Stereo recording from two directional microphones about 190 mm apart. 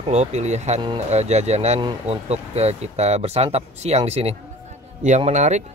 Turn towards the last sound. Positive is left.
turn(degrees=-40)  # may be behind; listen again after turning